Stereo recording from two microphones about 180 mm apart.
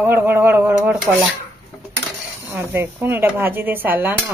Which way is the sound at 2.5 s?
10° right (ahead or behind).